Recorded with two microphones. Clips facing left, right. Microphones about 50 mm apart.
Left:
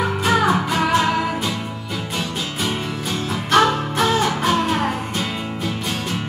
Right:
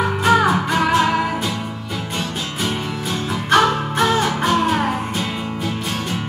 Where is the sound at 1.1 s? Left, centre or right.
Centre.